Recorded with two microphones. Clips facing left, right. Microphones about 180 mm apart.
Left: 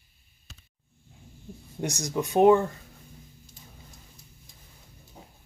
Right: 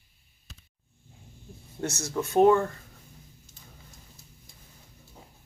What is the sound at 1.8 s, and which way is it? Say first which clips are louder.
Speech: left 1 dB; 15° left (ahead or behind).